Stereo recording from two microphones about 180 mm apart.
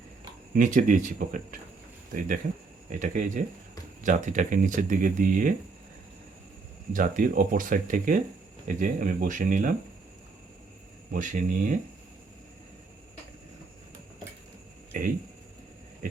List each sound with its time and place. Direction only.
0.5 s speech: 45° right (ahead or behind)
6.9 s speech: 50° right (ahead or behind)
11.1 s speech: 45° right (ahead or behind)
14.9 s speech: 50° right (ahead or behind)